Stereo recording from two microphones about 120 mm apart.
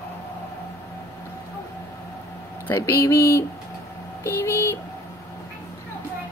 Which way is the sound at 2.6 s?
25° left (ahead or behind).